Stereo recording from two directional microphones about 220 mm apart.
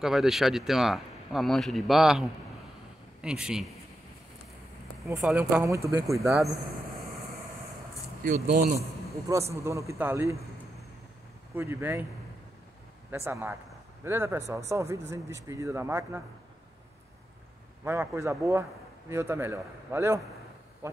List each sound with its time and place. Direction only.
0.0 s speech: centre (ahead or behind)
5.2 s a man's voice: 10° right (ahead or behind)
8.2 s speech: 40° right (ahead or behind)
9.5 s a man's voice: 15° right (ahead or behind)
11.5 s a man's voice: 10° right (ahead or behind)
13.1 s a man's voice: 10° right (ahead or behind)
17.8 s a man's voice: 10° right (ahead or behind)
20.8 s a sound: 10° right (ahead or behind)